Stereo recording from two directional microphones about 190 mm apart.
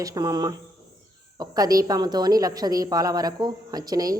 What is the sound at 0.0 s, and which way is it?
Speech, 20° right (ahead or behind).